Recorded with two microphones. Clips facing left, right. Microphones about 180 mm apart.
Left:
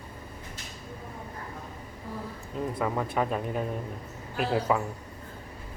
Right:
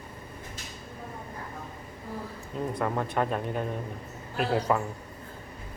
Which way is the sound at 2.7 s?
Centre (ahead or behind).